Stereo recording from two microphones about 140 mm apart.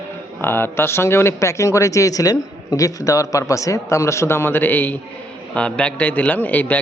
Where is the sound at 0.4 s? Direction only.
15° left (ahead or behind).